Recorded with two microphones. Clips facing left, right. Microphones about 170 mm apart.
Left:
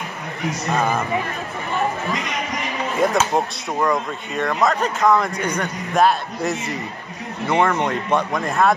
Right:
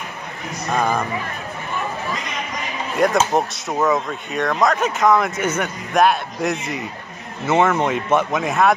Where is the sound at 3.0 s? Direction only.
5° left (ahead or behind).